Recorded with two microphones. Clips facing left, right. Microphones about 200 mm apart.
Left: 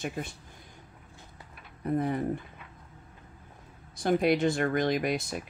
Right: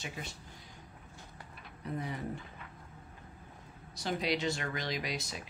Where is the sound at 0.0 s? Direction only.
50° left (ahead or behind).